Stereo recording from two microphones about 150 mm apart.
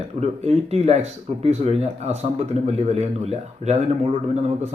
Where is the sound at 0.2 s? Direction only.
45° right (ahead or behind).